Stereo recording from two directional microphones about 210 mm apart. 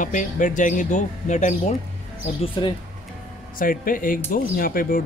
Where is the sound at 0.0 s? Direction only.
35° left (ahead or behind).